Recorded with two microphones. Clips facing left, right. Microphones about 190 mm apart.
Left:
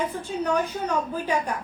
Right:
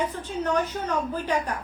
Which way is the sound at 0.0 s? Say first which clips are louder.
Left 1 dB; 10° left (ahead or behind).